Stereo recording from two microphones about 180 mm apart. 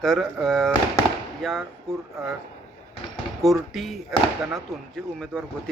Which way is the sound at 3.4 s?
Centre (ahead or behind).